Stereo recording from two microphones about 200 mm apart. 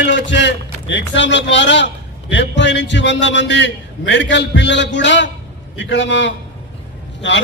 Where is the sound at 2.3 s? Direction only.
65° left (ahead or behind).